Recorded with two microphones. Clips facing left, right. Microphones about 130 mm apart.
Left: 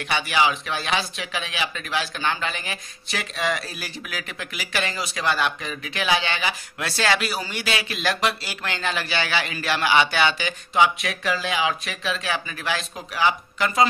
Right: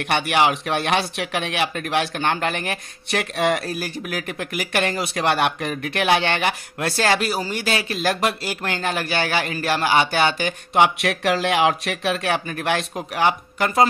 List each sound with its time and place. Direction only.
0.0 s speech: 60° right (ahead or behind)